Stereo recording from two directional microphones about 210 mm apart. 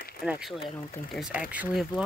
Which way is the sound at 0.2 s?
Centre (ahead or behind).